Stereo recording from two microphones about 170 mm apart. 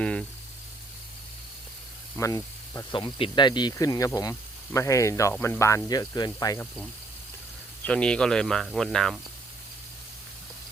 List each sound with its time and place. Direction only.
0.0 s speech: 5° left (ahead or behind)
2.1 s speech: 20° left (ahead or behind)
7.9 s speech: 5° left (ahead or behind)